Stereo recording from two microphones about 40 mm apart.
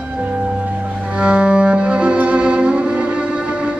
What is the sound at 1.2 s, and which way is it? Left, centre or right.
Music, right.